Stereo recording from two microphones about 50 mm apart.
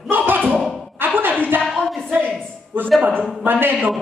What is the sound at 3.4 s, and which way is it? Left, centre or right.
Speech, right.